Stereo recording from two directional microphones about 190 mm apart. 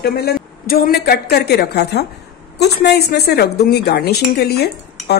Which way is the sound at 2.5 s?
60° left (ahead or behind).